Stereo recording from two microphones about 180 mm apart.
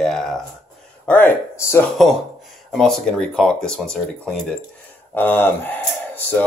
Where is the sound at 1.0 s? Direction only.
10° left (ahead or behind).